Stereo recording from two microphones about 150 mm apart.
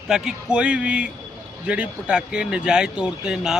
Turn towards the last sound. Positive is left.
turn(degrees=-5)  # may be behind; listen again after turning